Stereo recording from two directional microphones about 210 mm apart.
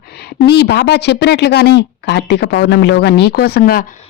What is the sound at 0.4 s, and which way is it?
A woman's voice, 50° left (ahead or behind).